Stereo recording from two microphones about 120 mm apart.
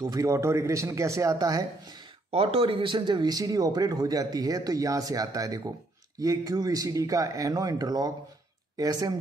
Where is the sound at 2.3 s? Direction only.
55° right (ahead or behind).